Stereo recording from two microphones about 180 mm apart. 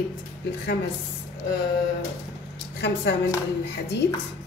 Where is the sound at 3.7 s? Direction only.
70° left (ahead or behind).